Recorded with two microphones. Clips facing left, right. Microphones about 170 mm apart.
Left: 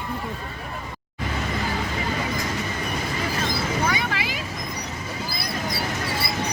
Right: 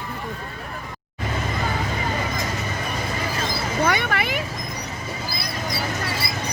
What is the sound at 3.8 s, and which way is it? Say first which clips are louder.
Vehicle: right 3 dB; 65° right (ahead or behind).